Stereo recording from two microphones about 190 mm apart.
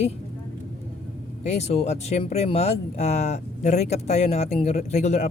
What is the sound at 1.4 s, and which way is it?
Speech, 35° left (ahead or behind).